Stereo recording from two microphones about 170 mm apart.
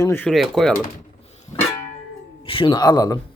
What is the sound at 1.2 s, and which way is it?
Music, 40° left (ahead or behind).